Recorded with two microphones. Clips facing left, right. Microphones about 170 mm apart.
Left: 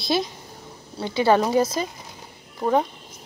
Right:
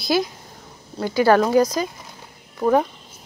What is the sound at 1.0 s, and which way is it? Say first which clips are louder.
Speech: right 3 dB; 25° left (ahead or behind).